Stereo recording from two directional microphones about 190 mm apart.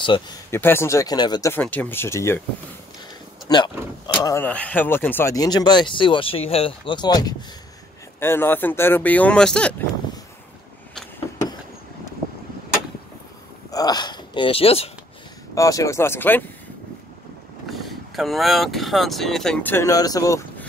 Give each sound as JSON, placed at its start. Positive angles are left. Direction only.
{"t": 0.0, "sound": "speech", "side_deg": 25}
{"t": 0.5, "sound": "speech", "side_deg": 10}
{"t": 1.6, "sound": "speech", "side_deg": 10}
{"t": 3.4, "sound": "speech", "side_deg": 25}
{"t": 13.7, "sound": "speech", "side_deg": 20}
{"t": 15.5, "sound": "speech", "side_deg": 15}
{"t": 17.6, "sound": "speech", "side_deg": 0}